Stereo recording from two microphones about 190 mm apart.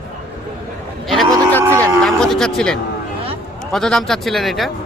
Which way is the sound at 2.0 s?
Centre (ahead or behind).